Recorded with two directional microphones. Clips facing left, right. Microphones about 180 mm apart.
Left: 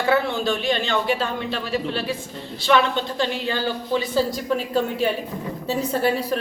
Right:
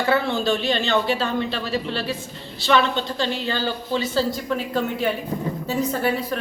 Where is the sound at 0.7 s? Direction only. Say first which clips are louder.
Right 1 dB; 10° left (ahead or behind).